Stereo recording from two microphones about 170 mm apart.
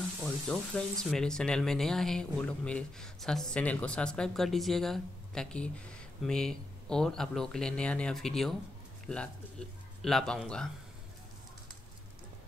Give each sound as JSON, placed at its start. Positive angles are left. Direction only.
{"t": 0.2, "sound": "speech", "side_deg": 5}